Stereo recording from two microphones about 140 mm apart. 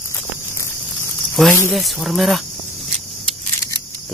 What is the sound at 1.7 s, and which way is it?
Speech, centre (ahead or behind).